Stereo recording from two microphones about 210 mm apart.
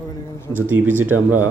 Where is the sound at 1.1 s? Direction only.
90° right.